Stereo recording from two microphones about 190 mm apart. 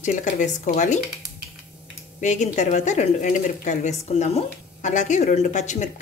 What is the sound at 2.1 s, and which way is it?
A woman's voice, 40° left (ahead or behind).